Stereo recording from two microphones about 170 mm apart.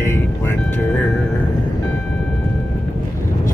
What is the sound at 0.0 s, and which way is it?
Music, 15° left (ahead or behind).